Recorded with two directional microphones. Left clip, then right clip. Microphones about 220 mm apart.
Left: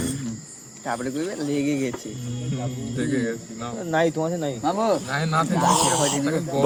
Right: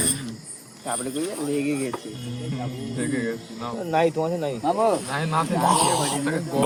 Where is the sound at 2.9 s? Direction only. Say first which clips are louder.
Left 2 dB; 15° left (ahead or behind).